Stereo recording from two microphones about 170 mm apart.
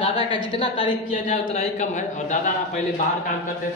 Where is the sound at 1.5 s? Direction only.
45° left (ahead or behind).